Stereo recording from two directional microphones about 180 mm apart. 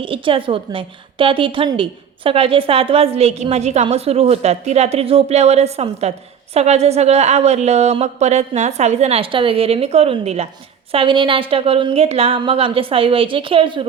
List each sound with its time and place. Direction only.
0.0 s a woman's voice: 30° right (ahead or behind)